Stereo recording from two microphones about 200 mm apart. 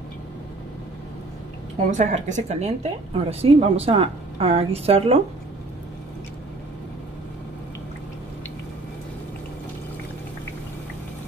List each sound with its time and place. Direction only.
1.9 s speech: 40° right (ahead or behind)